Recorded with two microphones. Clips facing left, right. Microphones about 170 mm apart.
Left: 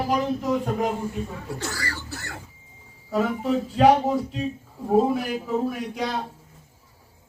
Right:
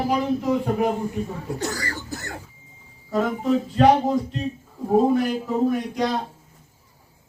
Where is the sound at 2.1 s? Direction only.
45° right (ahead or behind).